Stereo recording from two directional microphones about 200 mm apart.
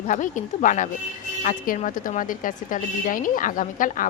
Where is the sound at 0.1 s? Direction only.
40° left (ahead or behind).